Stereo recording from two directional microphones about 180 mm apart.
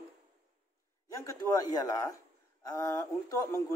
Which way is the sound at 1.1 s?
20° left (ahead or behind).